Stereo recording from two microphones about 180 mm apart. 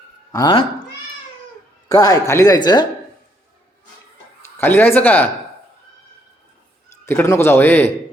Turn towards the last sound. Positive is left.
turn(degrees=10)  # may be behind; listen again after turning